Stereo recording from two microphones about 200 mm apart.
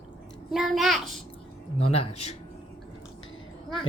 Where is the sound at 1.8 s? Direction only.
30° left (ahead or behind).